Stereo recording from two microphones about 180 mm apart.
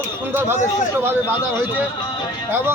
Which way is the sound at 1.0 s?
15° right (ahead or behind).